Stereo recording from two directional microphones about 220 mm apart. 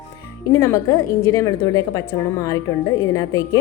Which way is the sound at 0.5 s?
15° left (ahead or behind).